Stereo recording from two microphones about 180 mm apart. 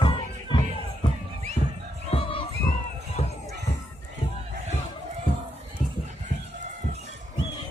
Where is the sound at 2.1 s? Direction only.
30° left (ahead or behind).